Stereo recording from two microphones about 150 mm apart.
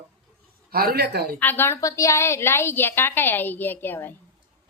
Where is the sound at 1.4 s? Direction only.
15° left (ahead or behind).